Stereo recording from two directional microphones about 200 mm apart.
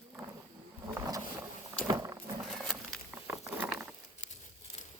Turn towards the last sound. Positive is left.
turn(degrees=-5)  # may be behind; listen again after turning